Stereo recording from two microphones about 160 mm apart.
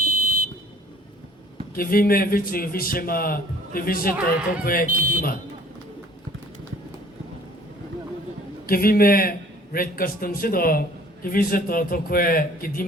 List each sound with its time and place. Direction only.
0.0 s a sound: 60° right (ahead or behind)
1.7 s a man's voice: 65° left (ahead or behind)
4.1 s speech: 10° right (ahead or behind)
4.6 s a man's voice: 65° left (ahead or behind)
4.9 s speech: 60° right (ahead or behind)
8.6 s a man's voice: 65° left (ahead or behind)